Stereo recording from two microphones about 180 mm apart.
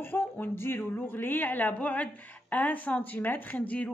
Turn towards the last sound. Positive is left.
turn(degrees=5)  # may be behind; listen again after turning